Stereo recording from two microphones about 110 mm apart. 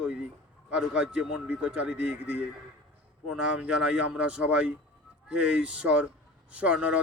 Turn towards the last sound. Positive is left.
turn(degrees=-10)  # may be behind; listen again after turning